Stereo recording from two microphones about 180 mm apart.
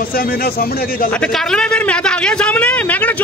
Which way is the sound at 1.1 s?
5° left (ahead or behind).